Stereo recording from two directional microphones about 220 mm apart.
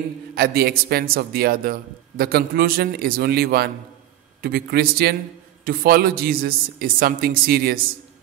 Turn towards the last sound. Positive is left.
turn(degrees=-45)  # may be behind; listen again after turning